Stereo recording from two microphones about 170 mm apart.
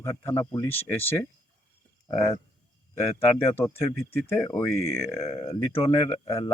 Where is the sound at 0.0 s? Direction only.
15° left (ahead or behind).